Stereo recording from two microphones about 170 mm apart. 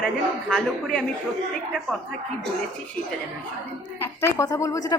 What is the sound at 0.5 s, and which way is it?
Speech, 5° left (ahead or behind).